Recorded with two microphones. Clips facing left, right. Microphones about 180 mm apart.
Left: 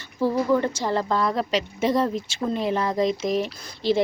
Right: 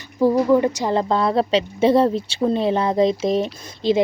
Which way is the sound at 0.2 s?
15° right (ahead or behind).